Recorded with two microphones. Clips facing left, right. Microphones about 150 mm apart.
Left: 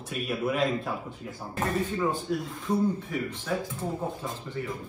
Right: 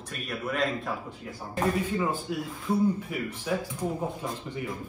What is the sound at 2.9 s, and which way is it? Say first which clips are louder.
Speech: left 1 dB; 10° right (ahead or behind).